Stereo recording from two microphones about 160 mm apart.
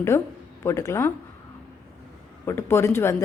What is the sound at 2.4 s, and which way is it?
Speech, 15° left (ahead or behind).